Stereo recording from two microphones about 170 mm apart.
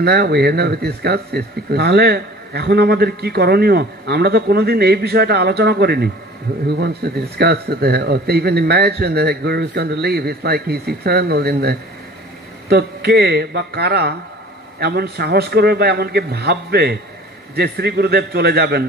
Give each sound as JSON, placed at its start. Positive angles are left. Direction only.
{"t": 0.0, "sound": "speech", "side_deg": -75}